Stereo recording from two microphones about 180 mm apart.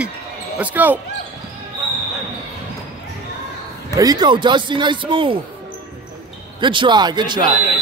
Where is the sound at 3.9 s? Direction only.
20° right (ahead or behind).